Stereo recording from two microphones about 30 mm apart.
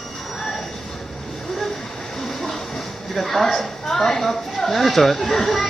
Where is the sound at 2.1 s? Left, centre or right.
Centre.